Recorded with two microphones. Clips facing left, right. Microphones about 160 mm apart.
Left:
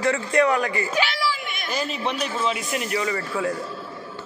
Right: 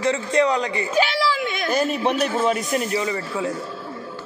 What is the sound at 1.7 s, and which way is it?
A man's voice, 55° right (ahead or behind).